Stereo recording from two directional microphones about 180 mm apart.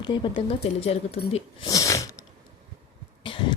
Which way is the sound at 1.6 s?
20° left (ahead or behind).